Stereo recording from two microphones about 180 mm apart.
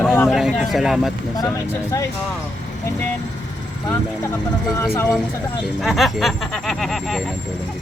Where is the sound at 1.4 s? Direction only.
20° left (ahead or behind).